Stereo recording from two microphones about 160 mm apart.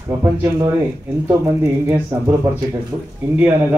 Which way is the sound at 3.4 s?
10° right (ahead or behind).